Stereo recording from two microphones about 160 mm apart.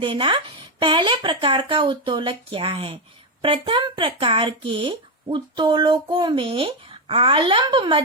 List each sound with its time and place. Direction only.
0.0 s speech: 30° right (ahead or behind)